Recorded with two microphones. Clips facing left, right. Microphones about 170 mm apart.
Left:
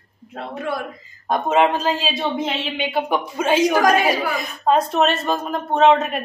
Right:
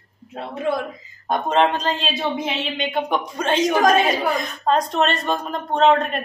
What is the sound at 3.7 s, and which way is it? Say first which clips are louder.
Speech: even; 25° right (ahead or behind).